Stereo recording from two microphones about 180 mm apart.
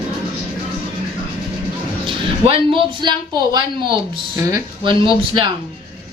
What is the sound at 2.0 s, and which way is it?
Speech, 30° right (ahead or behind).